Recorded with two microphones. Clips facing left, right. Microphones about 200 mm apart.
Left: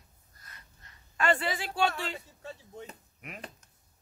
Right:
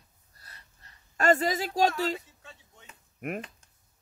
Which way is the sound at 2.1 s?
40° left (ahead or behind).